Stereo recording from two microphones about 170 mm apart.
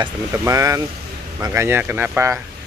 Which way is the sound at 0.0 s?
20° right (ahead or behind).